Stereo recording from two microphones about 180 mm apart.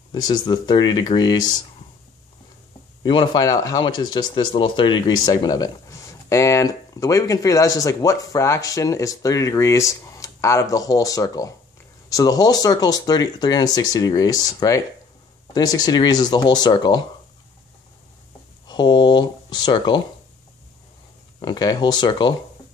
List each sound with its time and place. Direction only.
0.1 s speech: 25° left (ahead or behind)
3.0 s speech: 25° left (ahead or behind)
18.7 s a sound: 25° left (ahead or behind)
21.4 s speech: 20° left (ahead or behind)